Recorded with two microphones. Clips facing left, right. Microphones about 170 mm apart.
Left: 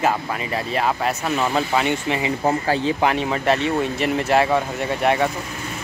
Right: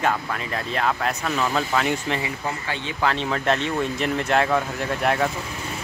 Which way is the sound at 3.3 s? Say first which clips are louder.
Left 3 dB; 5° left (ahead or behind).